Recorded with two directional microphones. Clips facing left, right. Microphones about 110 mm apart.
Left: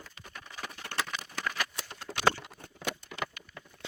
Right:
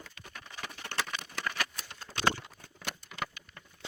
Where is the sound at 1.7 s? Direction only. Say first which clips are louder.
Left 3 dB; 70° left (ahead or behind).